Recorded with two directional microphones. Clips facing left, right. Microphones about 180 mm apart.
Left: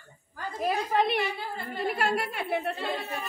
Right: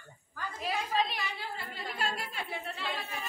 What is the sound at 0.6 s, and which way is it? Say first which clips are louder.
A woman's voice: left 6 dB; 55° left (ahead or behind).